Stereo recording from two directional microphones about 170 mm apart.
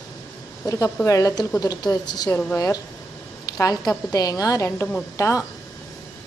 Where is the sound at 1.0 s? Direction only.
20° left (ahead or behind).